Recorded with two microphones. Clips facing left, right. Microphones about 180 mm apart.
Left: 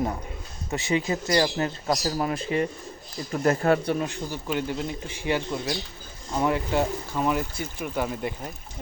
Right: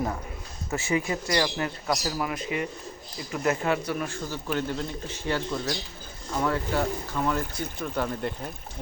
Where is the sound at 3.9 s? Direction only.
20° left (ahead or behind).